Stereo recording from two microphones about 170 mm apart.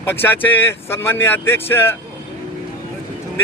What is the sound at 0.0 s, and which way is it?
Speech, 10° left (ahead or behind).